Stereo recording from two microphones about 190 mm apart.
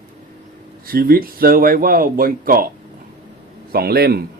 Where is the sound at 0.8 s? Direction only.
50° right (ahead or behind).